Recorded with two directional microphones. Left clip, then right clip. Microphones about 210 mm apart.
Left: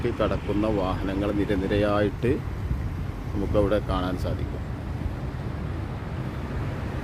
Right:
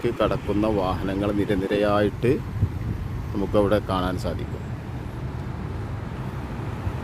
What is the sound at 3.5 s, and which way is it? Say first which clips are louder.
Speech: right 3 dB; 25° right (ahead or behind).